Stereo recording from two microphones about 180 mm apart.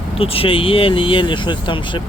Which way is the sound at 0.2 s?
30° left (ahead or behind).